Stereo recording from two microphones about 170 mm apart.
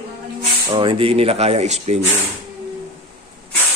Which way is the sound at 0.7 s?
30° right (ahead or behind).